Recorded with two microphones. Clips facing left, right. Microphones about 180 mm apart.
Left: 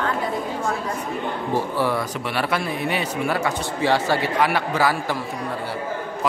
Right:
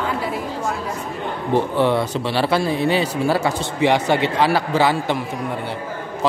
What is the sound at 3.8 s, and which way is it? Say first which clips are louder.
Speech: right 4 dB; 20° right (ahead or behind).